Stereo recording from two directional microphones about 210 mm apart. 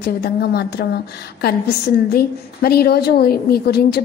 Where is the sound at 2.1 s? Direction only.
50° left (ahead or behind).